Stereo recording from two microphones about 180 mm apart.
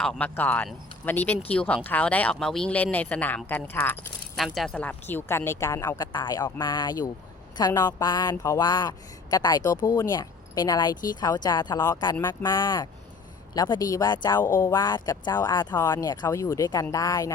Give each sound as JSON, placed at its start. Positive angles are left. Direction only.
{"t": 0.0, "sound": "speech", "side_deg": 5}
{"t": 4.4, "sound": "speech", "side_deg": 0}